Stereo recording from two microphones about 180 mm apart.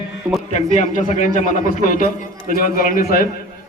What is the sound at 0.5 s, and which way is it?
A man's voice, 40° left (ahead or behind).